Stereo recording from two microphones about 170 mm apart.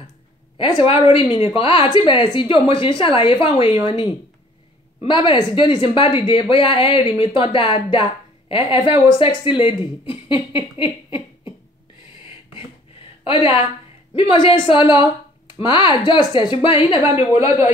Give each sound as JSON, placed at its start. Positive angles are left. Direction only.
{"t": 0.6, "sound": "a woman's voice", "side_deg": 30}
{"t": 13.2, "sound": "a woman's voice", "side_deg": 30}
{"t": 17.4, "sound": "a man's voice", "side_deg": -15}